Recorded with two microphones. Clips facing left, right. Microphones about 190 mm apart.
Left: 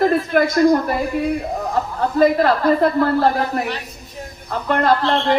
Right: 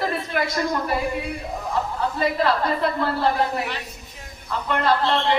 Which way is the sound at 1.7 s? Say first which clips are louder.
Left 4 dB; 45° left (ahead or behind).